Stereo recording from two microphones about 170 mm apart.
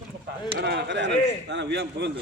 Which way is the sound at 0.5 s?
75° right (ahead or behind).